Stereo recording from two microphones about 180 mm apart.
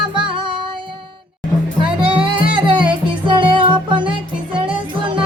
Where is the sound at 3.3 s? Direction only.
25° right (ahead or behind).